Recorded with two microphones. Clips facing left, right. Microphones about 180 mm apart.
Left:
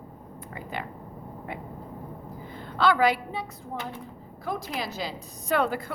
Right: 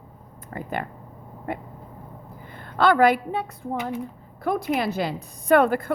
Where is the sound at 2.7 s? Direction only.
50° right (ahead or behind).